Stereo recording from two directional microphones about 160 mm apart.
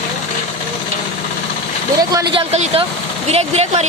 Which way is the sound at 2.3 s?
40° right (ahead or behind).